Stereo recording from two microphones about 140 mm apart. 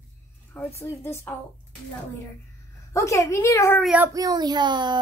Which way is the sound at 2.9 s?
20° left (ahead or behind).